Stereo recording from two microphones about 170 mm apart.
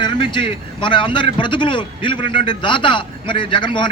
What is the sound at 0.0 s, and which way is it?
A man's voice, 25° left (ahead or behind).